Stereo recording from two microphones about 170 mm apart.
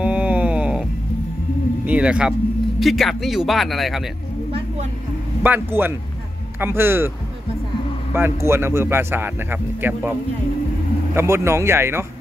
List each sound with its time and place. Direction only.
0.0 s a sound: 5° right (ahead or behind)
1.9 s speech: 5° right (ahead or behind)
4.5 s a sound: 30° right (ahead or behind)
5.4 s speech: 10° right (ahead or behind)
8.1 s speech: 15° right (ahead or behind)
11.1 s speech: 15° right (ahead or behind)